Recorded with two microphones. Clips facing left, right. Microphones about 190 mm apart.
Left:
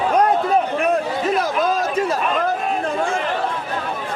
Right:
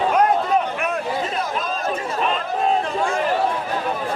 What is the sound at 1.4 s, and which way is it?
Chatter, 80° left.